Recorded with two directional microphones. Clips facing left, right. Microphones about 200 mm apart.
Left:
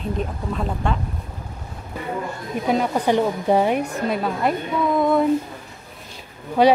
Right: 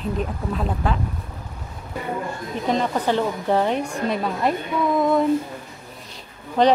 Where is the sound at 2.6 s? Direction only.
10° left (ahead or behind).